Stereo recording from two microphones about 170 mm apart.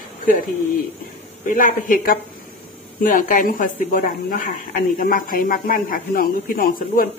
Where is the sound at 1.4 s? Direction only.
50° left (ahead or behind).